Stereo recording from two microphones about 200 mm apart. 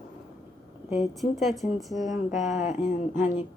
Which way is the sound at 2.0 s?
35° left (ahead or behind).